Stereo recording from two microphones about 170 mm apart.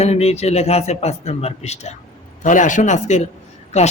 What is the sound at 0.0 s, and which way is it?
A man's voice, 40° left (ahead or behind).